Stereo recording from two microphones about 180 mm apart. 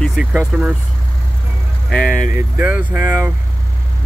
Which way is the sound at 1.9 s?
5° left (ahead or behind).